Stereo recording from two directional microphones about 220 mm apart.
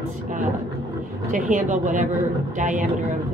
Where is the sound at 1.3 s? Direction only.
35° right (ahead or behind).